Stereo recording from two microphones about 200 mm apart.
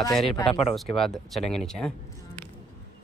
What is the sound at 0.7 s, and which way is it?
Speech, centre (ahead or behind).